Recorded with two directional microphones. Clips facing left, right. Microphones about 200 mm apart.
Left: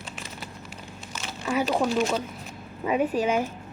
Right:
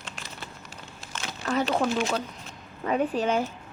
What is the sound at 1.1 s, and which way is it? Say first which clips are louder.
Crumpling: left 1 dB; 10° left (ahead or behind).